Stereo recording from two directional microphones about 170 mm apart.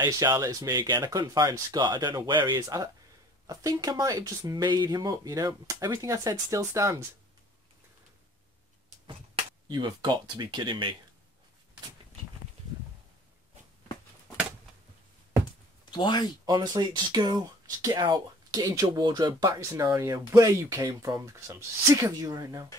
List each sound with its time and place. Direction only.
0.0 s speech: 20° right (ahead or behind)
9.0 s speech: 25° right (ahead or behind)
15.8 s speech: 25° left (ahead or behind)
16.4 s speech: 25° right (ahead or behind)